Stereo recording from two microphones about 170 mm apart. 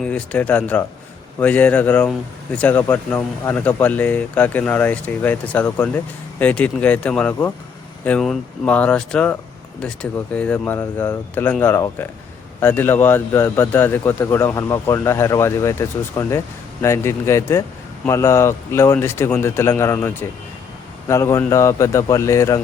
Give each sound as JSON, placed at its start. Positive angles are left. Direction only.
{"t": 0.0, "sound": "a man's voice", "side_deg": 10}